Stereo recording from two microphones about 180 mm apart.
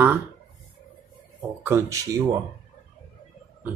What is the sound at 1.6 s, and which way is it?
Speech, 15° right (ahead or behind).